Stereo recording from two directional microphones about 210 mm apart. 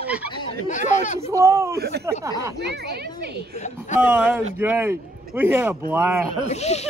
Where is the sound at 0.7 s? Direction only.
35° left (ahead or behind).